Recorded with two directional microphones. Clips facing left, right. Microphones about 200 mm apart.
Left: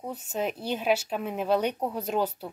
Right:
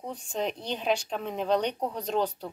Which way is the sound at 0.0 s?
5° left (ahead or behind).